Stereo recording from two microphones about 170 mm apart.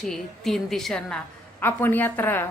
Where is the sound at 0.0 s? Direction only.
Centre (ahead or behind).